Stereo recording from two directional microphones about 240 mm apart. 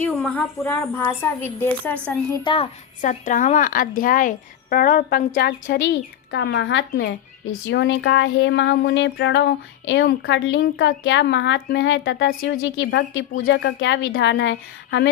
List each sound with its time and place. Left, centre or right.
0.0 s speech: centre
2.4 s a child's voice: left
3.0 s a woman's voice: left